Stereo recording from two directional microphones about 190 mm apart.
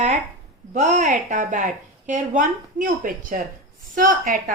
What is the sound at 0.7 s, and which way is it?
A woman's voice, 40° right (ahead or behind).